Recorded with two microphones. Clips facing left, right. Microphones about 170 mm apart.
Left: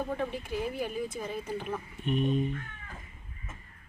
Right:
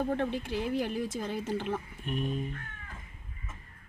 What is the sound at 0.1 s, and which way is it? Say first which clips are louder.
Speech: right 2 dB; 75° right (ahead or behind).